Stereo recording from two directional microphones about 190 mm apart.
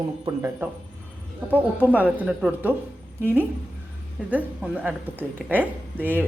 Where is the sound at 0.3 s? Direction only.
15° right (ahead or behind).